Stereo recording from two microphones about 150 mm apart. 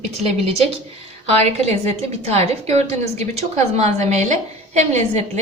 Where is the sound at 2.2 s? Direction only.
45° right (ahead or behind).